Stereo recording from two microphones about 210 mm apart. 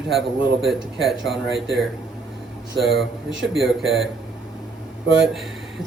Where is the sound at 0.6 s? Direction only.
Centre (ahead or behind).